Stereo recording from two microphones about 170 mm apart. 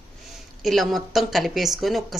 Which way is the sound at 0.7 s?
Centre (ahead or behind).